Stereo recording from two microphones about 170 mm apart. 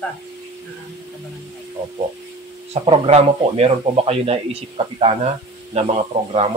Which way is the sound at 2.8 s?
35° right (ahead or behind).